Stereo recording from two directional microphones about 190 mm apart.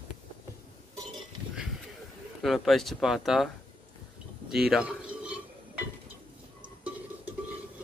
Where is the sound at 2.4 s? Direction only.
Centre (ahead or behind).